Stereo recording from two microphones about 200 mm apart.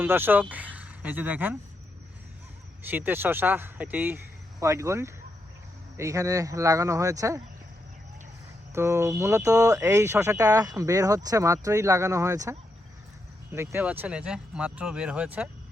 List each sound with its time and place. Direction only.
0.0 s speech: 10° right (ahead or behind)
0.5 s a sound: 5° right (ahead or behind)
2.8 s speech: 10° right (ahead or behind)
8.7 s speech: 15° right (ahead or behind)